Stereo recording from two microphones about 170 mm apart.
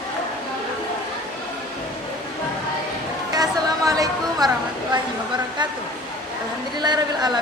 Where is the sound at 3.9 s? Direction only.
20° right (ahead or behind).